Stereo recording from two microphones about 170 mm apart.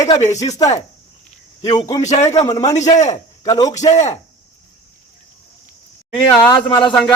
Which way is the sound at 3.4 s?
20° left (ahead or behind).